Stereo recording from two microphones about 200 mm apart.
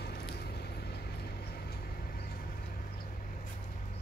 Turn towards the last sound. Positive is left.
turn(degrees=50)  # may be behind; listen again after turning